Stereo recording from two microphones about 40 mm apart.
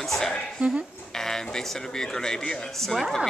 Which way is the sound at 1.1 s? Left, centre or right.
Centre.